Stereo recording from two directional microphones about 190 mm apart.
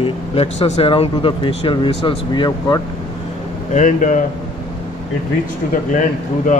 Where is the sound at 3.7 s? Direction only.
40° left (ahead or behind).